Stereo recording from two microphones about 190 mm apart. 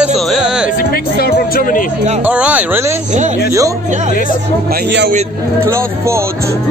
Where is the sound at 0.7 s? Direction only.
50° left (ahead or behind).